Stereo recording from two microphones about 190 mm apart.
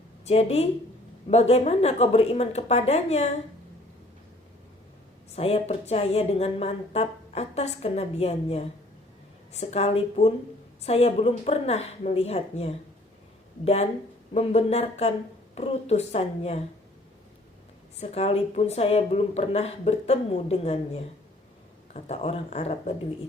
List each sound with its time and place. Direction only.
0.3 s a woman's voice: 30° left (ahead or behind)
5.3 s a woman's voice: 30° left (ahead or behind)
14.3 s a woman's voice: 35° left (ahead or behind)
18.0 s a woman's voice: 35° left (ahead or behind)